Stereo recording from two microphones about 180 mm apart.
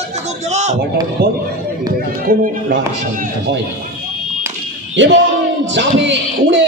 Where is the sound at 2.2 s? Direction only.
55° right (ahead or behind).